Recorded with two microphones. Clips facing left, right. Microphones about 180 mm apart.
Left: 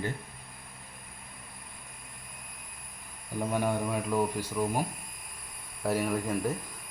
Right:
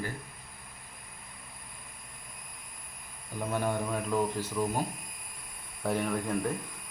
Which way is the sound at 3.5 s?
10° left (ahead or behind).